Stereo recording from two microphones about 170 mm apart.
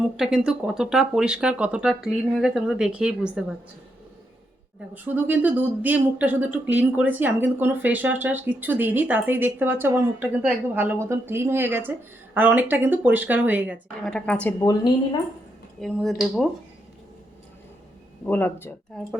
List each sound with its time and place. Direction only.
0.0 s speech: 5° right (ahead or behind)
5.0 s speech: 10° right (ahead or behind); by 14.5 s 10° left (ahead or behind)
14.6 s a woman's voice: 25° left (ahead or behind)
15.8 s speech: centre (ahead or behind)
18.3 s speech: 10° left (ahead or behind)